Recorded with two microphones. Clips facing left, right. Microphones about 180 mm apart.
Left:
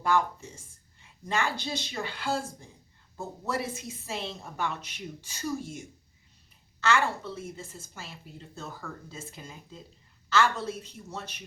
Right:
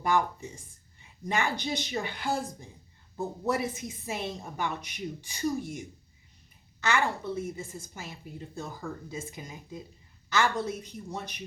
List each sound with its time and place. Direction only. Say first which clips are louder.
0.0 s a woman's voice: even; 15° right (ahead or behind)
6.7 s a woman's voice: left 1 dB; 15° right (ahead or behind)